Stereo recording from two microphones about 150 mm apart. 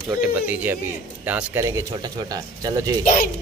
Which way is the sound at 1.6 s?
25° right (ahead or behind).